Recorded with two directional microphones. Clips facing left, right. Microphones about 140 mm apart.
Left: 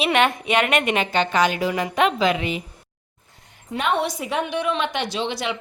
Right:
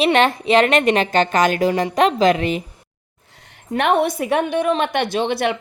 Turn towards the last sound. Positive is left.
turn(degrees=-55)  # may be behind; listen again after turning